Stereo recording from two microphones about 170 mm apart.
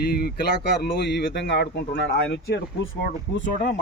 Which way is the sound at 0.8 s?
80° left.